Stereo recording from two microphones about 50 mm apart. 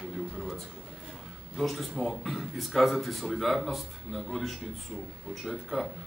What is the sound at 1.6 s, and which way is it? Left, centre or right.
A man's voice, centre.